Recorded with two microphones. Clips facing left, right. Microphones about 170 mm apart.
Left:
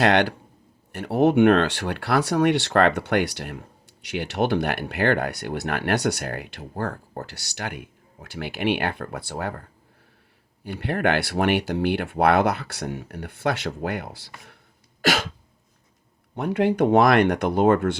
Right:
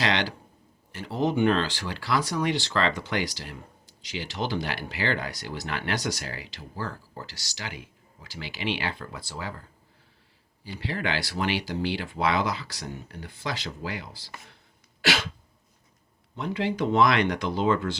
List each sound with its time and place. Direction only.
0.0 s speech: 60° left (ahead or behind)
15.0 s a sound: 50° left (ahead or behind)
16.3 s speech: 60° left (ahead or behind)